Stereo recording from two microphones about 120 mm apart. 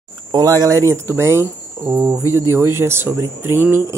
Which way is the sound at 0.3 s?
30° right (ahead or behind).